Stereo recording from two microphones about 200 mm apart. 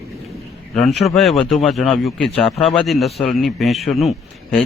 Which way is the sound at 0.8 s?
Centre (ahead or behind).